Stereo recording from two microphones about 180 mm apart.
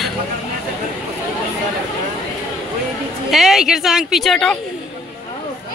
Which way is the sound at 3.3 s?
Centre (ahead or behind).